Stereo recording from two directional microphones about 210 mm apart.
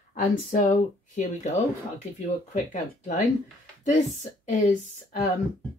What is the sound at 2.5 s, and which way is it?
Speech, 35° left (ahead or behind).